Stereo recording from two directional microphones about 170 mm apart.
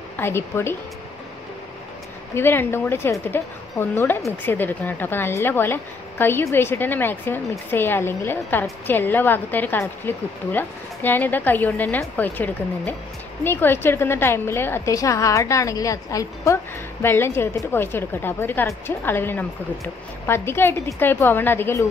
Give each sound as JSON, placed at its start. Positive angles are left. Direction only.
{"t": 0.2, "sound": "a woman's voice", "side_deg": 15}
{"t": 2.3, "sound": "a woman's voice", "side_deg": 15}